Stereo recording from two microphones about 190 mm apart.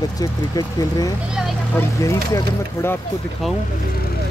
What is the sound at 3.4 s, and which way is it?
Speech, centre (ahead or behind).